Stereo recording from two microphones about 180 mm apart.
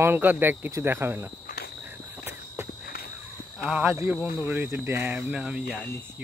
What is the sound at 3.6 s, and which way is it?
Speech, 10° right (ahead or behind).